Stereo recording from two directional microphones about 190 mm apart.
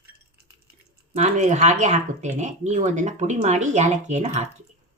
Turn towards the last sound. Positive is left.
turn(degrees=-35)  # may be behind; listen again after turning